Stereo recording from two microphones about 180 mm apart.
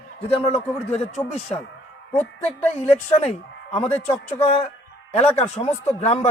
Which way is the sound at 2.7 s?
35° left (ahead or behind).